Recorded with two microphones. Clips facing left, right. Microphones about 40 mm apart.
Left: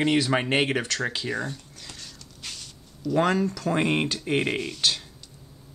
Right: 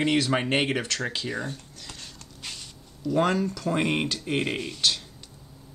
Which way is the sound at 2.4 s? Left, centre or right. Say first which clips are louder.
Even; centre.